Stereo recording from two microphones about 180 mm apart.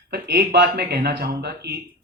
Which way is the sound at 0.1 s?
65° right (ahead or behind).